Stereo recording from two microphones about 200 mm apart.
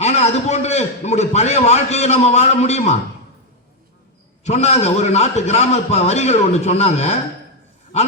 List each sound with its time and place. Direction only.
0.0 s a man's voice: 35° left (ahead or behind)
4.4 s a man's voice: 35° left (ahead or behind)